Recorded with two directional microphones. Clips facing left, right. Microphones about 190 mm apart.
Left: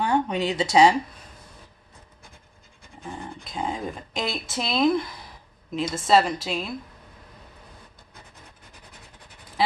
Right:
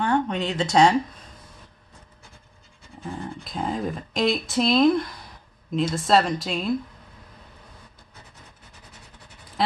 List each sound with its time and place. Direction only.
0.0 s speech: 10° left (ahead or behind)
3.0 s speech: centre (ahead or behind)